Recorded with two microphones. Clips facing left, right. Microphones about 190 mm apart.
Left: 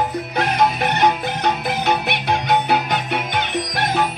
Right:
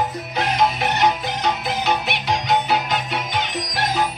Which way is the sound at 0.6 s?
55° left (ahead or behind).